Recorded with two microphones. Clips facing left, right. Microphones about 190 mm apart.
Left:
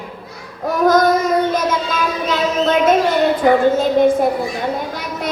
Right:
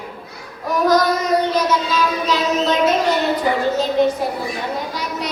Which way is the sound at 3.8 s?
50° left (ahead or behind).